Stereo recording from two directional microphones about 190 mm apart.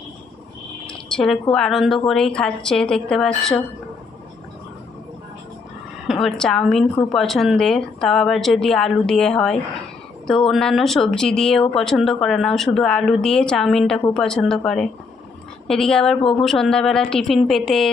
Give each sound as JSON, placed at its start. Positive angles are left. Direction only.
{"t": 0.9, "sound": "a sound", "side_deg": 5}
{"t": 1.5, "sound": "a woman's voice", "side_deg": 0}
{"t": 6.1, "sound": "a woman's voice", "side_deg": 0}